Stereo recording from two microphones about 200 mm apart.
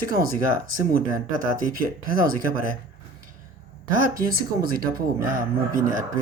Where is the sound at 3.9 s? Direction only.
40° right (ahead or behind).